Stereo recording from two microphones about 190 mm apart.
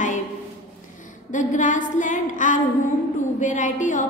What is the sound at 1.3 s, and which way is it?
A woman's voice, 40° left (ahead or behind).